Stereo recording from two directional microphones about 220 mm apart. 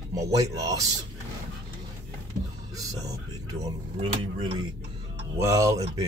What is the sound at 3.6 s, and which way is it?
Speech, 25° right (ahead or behind).